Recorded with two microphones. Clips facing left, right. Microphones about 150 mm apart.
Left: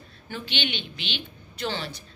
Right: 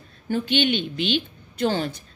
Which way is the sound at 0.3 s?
45° right (ahead or behind).